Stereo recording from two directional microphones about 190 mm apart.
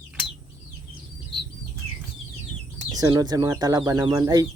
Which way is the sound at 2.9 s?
20° right (ahead or behind).